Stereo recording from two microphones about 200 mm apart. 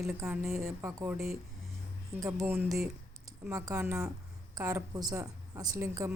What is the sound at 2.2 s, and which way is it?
A woman's voice, 15° right (ahead or behind).